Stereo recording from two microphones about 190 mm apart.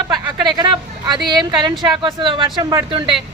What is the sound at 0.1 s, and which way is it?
A woman's voice, 20° right (ahead or behind).